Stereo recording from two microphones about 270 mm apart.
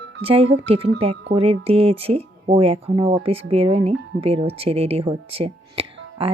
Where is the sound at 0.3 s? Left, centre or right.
Right.